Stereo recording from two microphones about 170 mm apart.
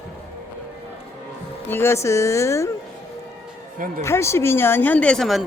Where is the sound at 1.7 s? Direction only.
15° left (ahead or behind).